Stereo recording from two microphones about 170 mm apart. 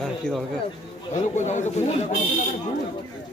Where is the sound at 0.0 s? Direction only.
Centre (ahead or behind).